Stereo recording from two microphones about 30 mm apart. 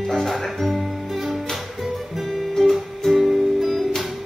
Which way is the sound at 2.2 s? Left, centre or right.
Centre.